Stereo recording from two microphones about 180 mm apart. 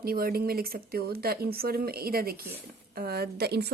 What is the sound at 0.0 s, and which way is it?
Speech, 55° right (ahead or behind).